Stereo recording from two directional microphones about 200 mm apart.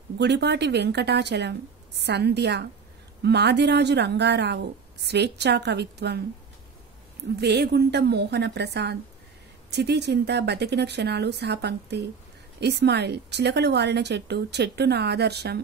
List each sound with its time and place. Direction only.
0.2 s a woman's voice: 55° right (ahead or behind)
7.3 s a woman's voice: 55° right (ahead or behind)